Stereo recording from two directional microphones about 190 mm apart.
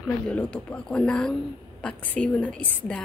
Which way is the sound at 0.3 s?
5° left (ahead or behind).